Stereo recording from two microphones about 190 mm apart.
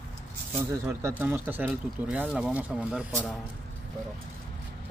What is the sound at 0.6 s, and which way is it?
Speech, 10° right (ahead or behind).